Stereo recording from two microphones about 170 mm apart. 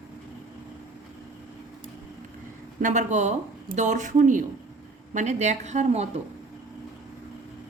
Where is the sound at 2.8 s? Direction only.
45° right (ahead or behind).